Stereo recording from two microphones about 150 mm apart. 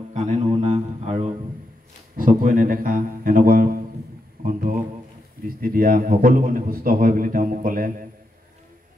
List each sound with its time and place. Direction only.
0.1 s a sound: 55° right (ahead or behind)
2.1 s a man's voice: 70° right (ahead or behind)
5.4 s a man's voice: 75° right (ahead or behind)